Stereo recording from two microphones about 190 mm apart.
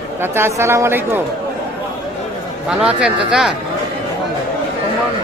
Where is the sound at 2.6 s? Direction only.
5° right (ahead or behind).